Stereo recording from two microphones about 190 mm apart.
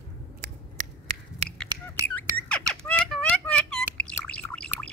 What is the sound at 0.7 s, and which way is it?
Finger snapping, 40° right (ahead or behind).